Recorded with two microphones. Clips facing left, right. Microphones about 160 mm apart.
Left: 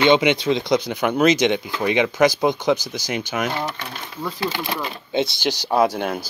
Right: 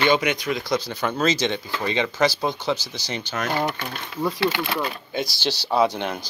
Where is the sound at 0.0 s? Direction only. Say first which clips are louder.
Left 5 dB; 25° left (ahead or behind).